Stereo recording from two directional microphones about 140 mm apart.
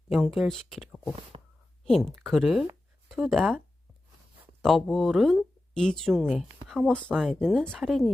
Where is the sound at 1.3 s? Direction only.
45° right (ahead or behind).